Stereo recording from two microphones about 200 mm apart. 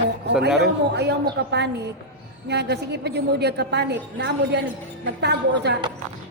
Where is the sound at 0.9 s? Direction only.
55° right (ahead or behind).